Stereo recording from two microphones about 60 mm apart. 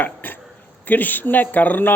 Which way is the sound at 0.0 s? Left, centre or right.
Left.